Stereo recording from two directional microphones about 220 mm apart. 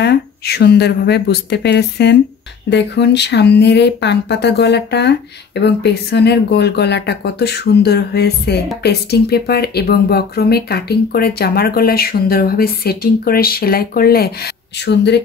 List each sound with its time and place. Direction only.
0.0 s speech: 50° left (ahead or behind)